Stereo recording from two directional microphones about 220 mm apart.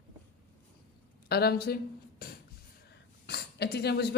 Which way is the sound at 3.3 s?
50° left (ahead or behind).